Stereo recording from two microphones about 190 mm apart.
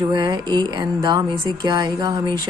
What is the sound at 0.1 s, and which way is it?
Speech, 20° right (ahead or behind).